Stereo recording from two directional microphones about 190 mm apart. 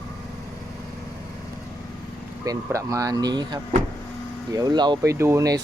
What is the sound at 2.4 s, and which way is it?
Speech, 15° right (ahead or behind).